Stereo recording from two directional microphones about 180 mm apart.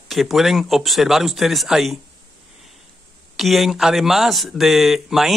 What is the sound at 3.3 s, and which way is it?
Speech, centre (ahead or behind).